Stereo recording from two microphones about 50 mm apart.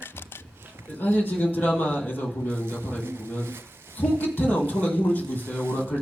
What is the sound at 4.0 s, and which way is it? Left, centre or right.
Speech, left.